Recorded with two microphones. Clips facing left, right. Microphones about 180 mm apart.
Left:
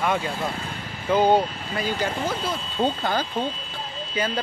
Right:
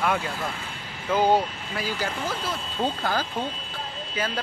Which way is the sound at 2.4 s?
25° left (ahead or behind).